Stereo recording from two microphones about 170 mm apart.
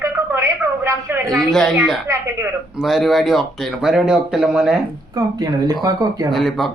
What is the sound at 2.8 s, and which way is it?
A man's voice, centre (ahead or behind).